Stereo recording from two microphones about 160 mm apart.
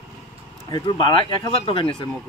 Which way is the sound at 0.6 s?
30° left (ahead or behind).